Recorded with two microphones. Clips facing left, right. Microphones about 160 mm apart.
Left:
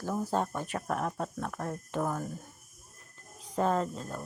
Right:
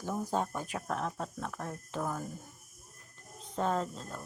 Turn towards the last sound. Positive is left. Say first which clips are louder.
# left 3 dB
turn(degrees=5)  # may be behind; listen again after turning